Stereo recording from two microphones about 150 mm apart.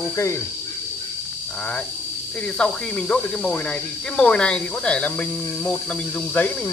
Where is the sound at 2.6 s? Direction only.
5° left (ahead or behind).